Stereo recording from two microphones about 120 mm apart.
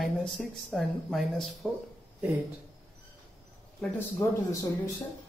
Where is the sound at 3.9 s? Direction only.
25° left (ahead or behind).